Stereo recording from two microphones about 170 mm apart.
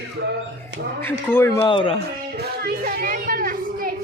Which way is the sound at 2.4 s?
65° right (ahead or behind).